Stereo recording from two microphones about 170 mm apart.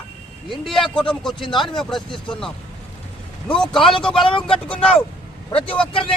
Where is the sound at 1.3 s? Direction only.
25° left (ahead or behind).